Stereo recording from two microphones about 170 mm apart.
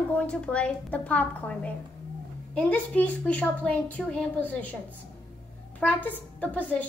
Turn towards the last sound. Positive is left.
turn(degrees=10)  # may be behind; listen again after turning